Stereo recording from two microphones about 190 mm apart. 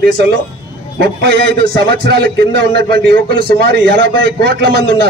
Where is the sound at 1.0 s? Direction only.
60° right (ahead or behind).